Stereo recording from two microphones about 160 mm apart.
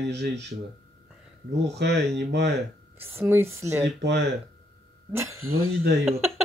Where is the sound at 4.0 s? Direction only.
90° right.